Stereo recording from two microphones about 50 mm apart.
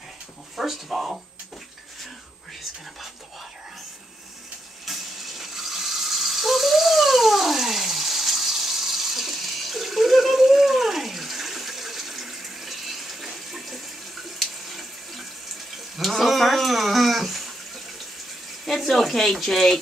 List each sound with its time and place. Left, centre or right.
0.6 s speech: centre
4.8 s rattle: centre
14.4 s water tap: centre
16.0 s cat: centre
18.7 s speech: centre